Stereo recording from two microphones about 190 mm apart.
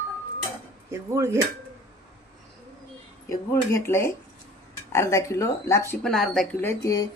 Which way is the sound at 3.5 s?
15° left (ahead or behind).